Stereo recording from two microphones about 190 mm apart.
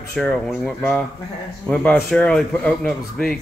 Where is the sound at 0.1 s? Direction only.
5° left (ahead or behind).